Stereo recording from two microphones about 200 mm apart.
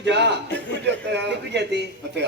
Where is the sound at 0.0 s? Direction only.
60° right (ahead or behind).